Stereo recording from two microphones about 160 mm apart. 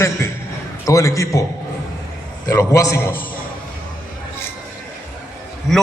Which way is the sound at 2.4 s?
20° left (ahead or behind).